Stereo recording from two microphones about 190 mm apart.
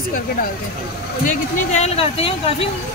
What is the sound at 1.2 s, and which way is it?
Speech, 35° left (ahead or behind).